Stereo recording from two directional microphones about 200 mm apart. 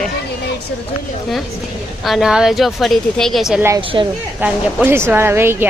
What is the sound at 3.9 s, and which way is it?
Speech, 20° right (ahead or behind).